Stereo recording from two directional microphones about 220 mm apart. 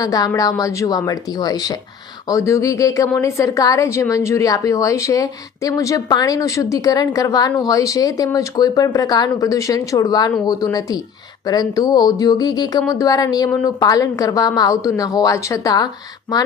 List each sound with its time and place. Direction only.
0.0 s a woman's voice: 15° left (ahead or behind)